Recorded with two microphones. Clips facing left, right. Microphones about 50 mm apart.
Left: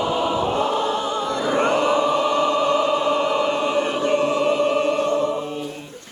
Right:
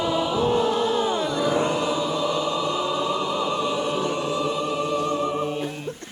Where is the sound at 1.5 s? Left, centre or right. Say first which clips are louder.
Left 7 dB; left.